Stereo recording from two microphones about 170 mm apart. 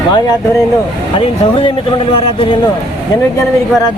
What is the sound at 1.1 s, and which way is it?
Speech, 35° left (ahead or behind).